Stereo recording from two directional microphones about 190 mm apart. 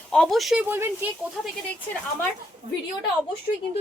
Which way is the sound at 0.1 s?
Centre (ahead or behind).